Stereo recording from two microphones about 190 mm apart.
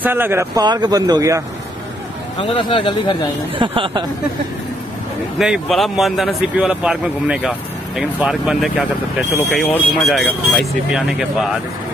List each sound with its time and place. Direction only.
0.0 s speech: 10° right (ahead or behind)
2.5 s speech: 25° left (ahead or behind)
3.5 s speech: 25° right (ahead or behind)
5.4 s speech: centre (ahead or behind)